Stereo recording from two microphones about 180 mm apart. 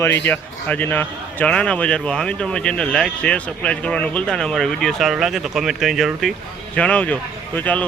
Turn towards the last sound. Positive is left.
turn(degrees=10)  # may be behind; listen again after turning